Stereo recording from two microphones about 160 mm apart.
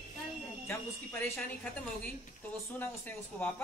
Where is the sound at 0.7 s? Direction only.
15° left (ahead or behind).